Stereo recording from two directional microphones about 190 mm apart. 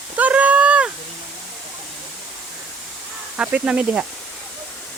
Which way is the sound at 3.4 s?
5° right (ahead or behind).